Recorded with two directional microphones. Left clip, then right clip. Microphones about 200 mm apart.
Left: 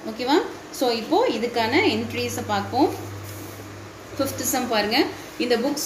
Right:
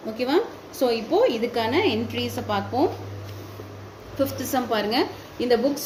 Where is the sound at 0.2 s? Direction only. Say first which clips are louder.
Left 2 dB; 40° right (ahead or behind).